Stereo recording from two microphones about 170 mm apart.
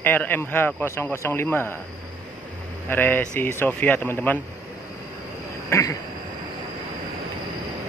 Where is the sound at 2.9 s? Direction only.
10° left (ahead or behind).